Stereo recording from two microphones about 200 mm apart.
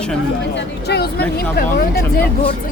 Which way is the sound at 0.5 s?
55° left (ahead or behind).